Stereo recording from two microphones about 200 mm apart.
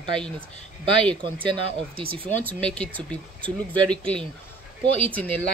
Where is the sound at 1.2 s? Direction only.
25° right (ahead or behind).